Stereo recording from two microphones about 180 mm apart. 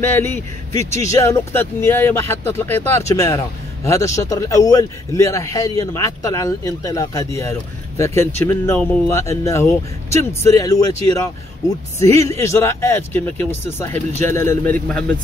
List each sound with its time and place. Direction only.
0.0 s speech: 10° left (ahead or behind)